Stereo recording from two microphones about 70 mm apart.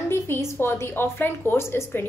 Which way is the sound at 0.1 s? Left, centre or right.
Left.